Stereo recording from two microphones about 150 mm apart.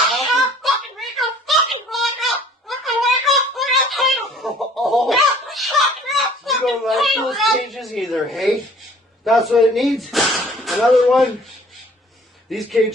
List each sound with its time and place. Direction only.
0.6 s a sound: centre (ahead or behind)
9.2 s speech: centre (ahead or behind)
12.5 s speech: centre (ahead or behind)